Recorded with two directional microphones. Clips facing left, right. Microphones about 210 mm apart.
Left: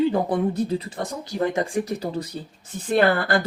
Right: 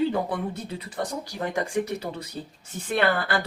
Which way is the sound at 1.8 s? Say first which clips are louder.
Left 4 dB; 35° left (ahead or behind).